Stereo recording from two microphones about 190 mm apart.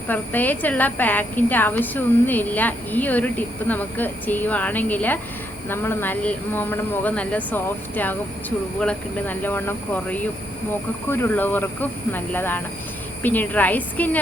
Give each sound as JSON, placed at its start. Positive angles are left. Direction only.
{"t": 0.1, "sound": "speech", "side_deg": 10}